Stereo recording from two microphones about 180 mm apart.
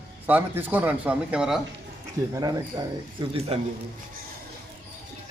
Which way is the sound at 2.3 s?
20° right (ahead or behind).